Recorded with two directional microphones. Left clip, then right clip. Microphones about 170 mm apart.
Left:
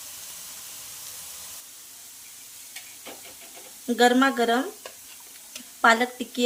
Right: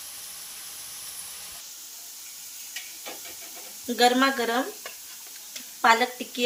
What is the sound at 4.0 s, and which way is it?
Speech, 75° left (ahead or behind).